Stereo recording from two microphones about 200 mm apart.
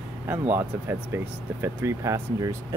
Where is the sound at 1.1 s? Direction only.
10° right (ahead or behind).